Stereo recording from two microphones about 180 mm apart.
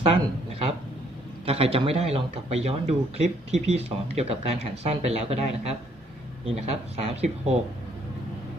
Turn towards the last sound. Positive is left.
turn(degrees=-35)  # may be behind; listen again after turning